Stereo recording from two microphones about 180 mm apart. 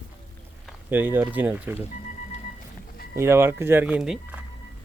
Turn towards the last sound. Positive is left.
turn(degrees=-5)  # may be behind; listen again after turning